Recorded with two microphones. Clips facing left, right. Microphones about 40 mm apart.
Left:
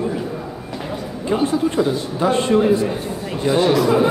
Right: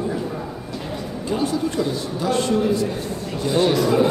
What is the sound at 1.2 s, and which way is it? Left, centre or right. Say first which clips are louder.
A man's voice: left 4 dB; left.